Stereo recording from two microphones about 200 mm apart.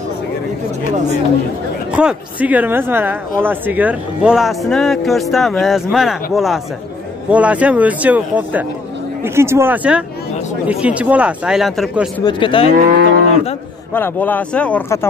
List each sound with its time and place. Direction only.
1.9 s speech: 5° right (ahead or behind)
12.3 s speech: 25° left (ahead or behind)
12.7 s moo: 55° right (ahead or behind)
13.9 s speech: 10° left (ahead or behind)